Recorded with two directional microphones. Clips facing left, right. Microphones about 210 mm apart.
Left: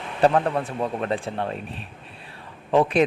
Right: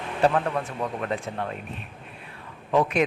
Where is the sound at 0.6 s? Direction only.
30° left (ahead or behind).